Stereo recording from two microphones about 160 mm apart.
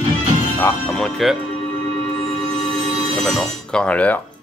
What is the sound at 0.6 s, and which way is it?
Speech, 15° left (ahead or behind).